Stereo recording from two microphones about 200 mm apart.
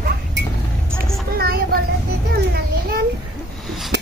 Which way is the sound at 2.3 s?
50° right (ahead or behind).